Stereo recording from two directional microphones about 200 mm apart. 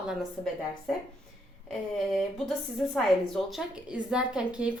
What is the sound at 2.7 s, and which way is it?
A woman's voice, centre (ahead or behind).